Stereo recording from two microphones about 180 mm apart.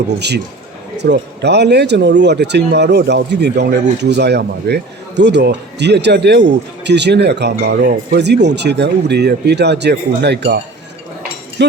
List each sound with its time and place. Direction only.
0.2 s speech: 70° right (ahead or behind)